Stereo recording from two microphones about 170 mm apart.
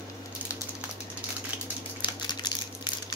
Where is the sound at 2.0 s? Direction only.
25° left (ahead or behind).